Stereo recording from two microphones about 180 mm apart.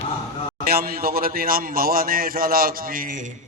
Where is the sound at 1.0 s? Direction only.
55° right (ahead or behind).